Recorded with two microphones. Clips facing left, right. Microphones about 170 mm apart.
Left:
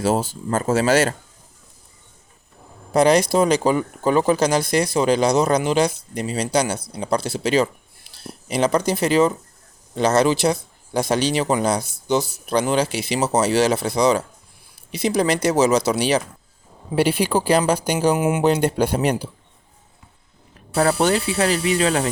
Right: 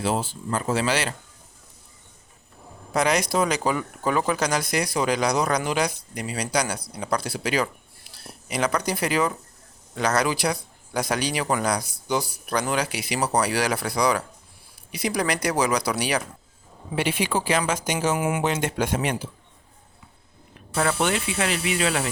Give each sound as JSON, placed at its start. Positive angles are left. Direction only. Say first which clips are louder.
{"t": 0.0, "sound": "speech", "louder": "left 5 dB", "side_deg": 40}
{"t": 2.9, "sound": "speech", "louder": "left 7 dB", "side_deg": 30}
{"t": 16.9, "sound": "speech", "louder": "left 6 dB", "side_deg": 35}
{"t": 18.2, "sound": "speech", "louder": "left 5 dB", "side_deg": 25}
{"t": 18.4, "sound": "speech", "louder": "left 7 dB", "side_deg": 35}
{"t": 20.7, "sound": "speech", "louder": "left 6 dB", "side_deg": 35}